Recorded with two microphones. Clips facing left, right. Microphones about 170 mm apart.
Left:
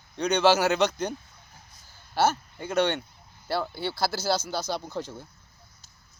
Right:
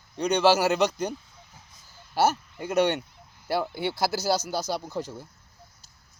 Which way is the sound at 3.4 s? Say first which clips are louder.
Right 2 dB; 15° right (ahead or behind).